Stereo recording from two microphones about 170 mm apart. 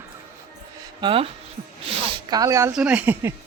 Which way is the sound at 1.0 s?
30° right (ahead or behind).